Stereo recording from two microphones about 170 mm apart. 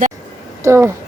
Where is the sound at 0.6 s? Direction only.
15° right (ahead or behind).